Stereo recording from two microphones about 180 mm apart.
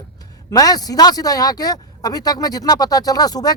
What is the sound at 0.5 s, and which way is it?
Speech, 20° left (ahead or behind).